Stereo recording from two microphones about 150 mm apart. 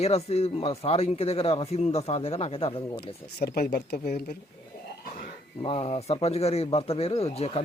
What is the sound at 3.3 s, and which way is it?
Speech, 90° left.